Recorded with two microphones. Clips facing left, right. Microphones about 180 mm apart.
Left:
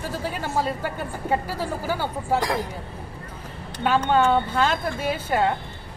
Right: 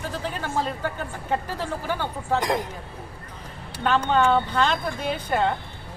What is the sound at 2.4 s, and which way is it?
Speech, 20° right (ahead or behind).